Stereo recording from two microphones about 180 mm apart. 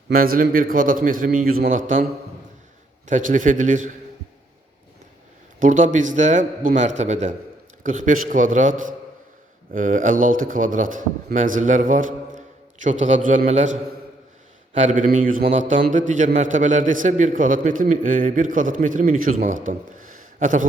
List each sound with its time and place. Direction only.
0.1 s a man's voice: 55° right (ahead or behind)
3.1 s a man's voice: 45° right (ahead or behind)
5.5 s a man's voice: 45° right (ahead or behind)
14.8 s a man's voice: 45° right (ahead or behind)
19.5 s a sound: 45° right (ahead or behind)